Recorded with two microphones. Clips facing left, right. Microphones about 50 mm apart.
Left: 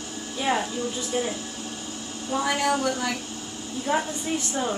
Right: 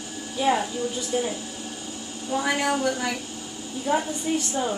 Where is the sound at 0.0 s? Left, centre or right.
Centre.